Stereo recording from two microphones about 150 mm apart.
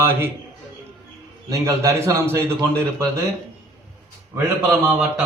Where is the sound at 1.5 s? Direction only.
20° right (ahead or behind).